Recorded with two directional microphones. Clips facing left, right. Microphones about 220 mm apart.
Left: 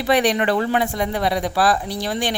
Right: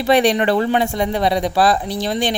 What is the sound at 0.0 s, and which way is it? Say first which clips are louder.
A man's voice: right 3 dB; 25° right (ahead or behind).